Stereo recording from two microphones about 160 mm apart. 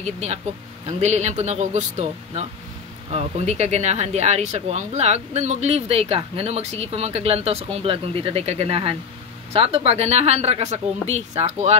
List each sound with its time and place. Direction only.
0.0 s a woman's voice: 45° right (ahead or behind)